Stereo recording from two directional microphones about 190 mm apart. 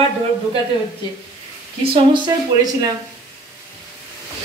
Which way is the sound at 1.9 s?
25° right (ahead or behind).